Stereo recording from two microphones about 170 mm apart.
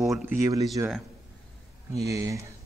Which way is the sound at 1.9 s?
20° right (ahead or behind).